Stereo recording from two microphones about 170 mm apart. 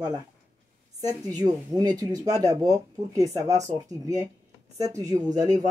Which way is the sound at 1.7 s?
20° right (ahead or behind).